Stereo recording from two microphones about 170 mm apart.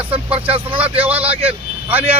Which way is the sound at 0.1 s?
35° right (ahead or behind).